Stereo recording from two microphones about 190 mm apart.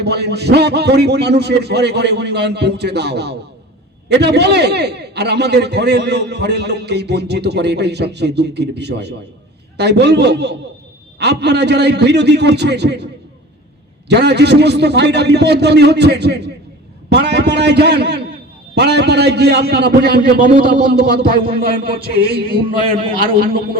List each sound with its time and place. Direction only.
0.0 s a man's voice: 60° right (ahead or behind)
14.1 s a man's voice: 60° right (ahead or behind)
23.0 s a man's voice: 25° right (ahead or behind)